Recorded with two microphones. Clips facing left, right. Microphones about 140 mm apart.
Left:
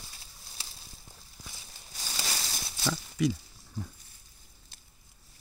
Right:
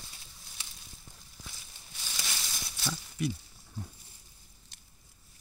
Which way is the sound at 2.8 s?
90° left.